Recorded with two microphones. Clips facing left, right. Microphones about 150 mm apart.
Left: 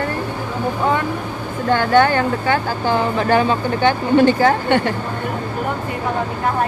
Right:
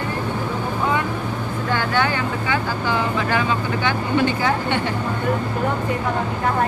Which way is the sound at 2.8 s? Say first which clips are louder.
Left 7 dB; 35° left (ahead or behind).